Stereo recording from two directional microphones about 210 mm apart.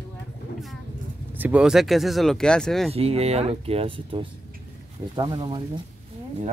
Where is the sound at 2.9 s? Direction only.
30° right (ahead or behind).